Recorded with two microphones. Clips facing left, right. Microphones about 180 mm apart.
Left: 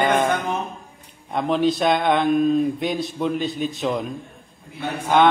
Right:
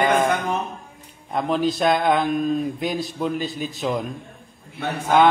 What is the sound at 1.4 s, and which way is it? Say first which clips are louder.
A man's voice: left 1 dB; centre (ahead or behind).